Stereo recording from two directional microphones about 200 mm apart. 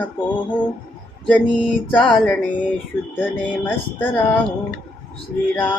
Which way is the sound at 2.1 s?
5° left (ahead or behind).